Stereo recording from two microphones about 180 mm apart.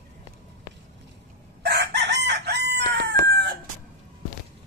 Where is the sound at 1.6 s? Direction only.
70° right (ahead or behind).